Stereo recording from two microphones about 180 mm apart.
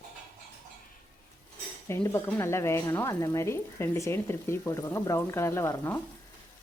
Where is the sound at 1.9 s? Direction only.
15° left (ahead or behind).